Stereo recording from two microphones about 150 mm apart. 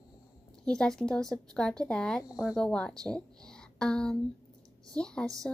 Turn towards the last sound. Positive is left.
turn(degrees=5)  # may be behind; listen again after turning